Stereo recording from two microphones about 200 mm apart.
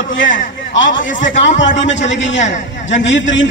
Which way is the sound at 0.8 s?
70° left (ahead or behind).